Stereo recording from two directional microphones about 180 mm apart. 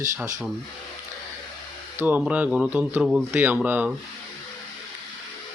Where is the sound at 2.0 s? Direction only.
10° right (ahead or behind).